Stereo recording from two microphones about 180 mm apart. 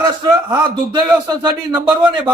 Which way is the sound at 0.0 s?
25° right (ahead or behind).